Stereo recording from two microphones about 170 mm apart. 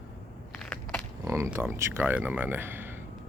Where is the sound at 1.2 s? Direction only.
15° right (ahead or behind).